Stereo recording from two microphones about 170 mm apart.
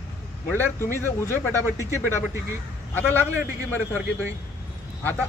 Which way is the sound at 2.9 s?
10° left (ahead or behind).